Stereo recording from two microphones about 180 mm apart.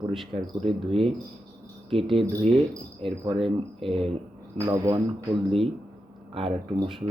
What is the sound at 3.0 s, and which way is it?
Speech, 30° right (ahead or behind).